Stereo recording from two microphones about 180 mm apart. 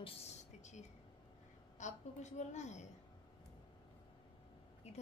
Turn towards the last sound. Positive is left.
turn(degrees=40)  # may be behind; listen again after turning